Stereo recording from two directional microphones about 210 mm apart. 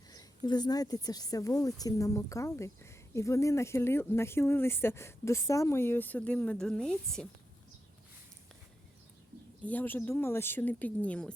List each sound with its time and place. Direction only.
0.1 s speech: 20° left (ahead or behind); by 7.3 s centre (ahead or behind)
9.6 s speech: 10° left (ahead or behind)